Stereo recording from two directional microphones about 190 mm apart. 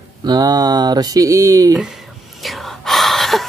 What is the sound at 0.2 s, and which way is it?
Speech, 20° right (ahead or behind).